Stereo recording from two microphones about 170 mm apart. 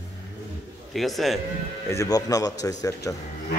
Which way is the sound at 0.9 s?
Centre (ahead or behind).